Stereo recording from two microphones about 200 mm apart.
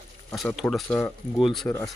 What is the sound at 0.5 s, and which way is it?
Speech, 5° left (ahead or behind).